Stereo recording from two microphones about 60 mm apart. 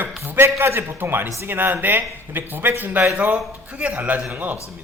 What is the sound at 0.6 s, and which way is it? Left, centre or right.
A man's voice, right.